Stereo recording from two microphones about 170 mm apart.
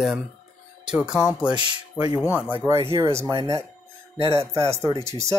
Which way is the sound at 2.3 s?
10° right (ahead or behind).